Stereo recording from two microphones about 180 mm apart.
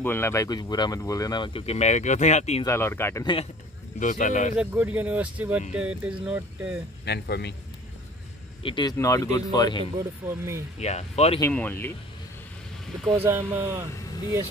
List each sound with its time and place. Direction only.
0.0 s speech: 15° left (ahead or behind); by 2.6 s 40° left (ahead or behind)
2.6 s speech: 15° left (ahead or behind)
4.0 s speech: 45° left (ahead or behind)
4.6 s speech: 10° right (ahead or behind)
7.1 s speech: 65° left (ahead or behind)
8.6 s speech: 25° left (ahead or behind)
9.9 s speech: 15° right (ahead or behind)
10.8 s speech: 35° left (ahead or behind)
11.5 s speech: 10° left (ahead or behind)
13.1 s speech: 10° right (ahead or behind)